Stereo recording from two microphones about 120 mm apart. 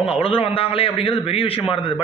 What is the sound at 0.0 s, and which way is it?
A man's voice, 50° left (ahead or behind).